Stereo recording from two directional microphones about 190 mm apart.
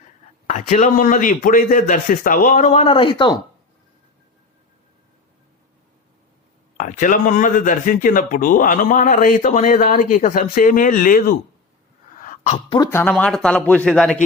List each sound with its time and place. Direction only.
0.4 s speech: 40° left (ahead or behind); by 3.3 s 25° left (ahead or behind)
6.7 s speech: 40° left (ahead or behind)
12.2 s sneeze: 40° left (ahead or behind)
12.8 s a man's voice: 10° left (ahead or behind)